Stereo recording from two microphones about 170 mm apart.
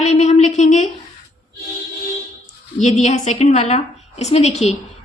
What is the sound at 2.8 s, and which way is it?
A woman's voice, 40° left (ahead or behind).